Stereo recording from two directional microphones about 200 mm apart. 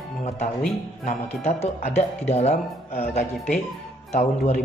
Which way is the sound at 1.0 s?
30° left (ahead or behind).